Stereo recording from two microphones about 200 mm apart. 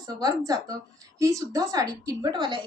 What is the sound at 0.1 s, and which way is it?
A woman's voice, 20° right (ahead or behind).